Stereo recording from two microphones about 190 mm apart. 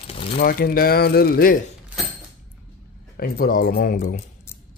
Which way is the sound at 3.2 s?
50° left (ahead or behind).